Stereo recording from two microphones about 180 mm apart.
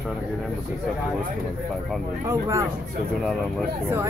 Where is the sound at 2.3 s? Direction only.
15° right (ahead or behind).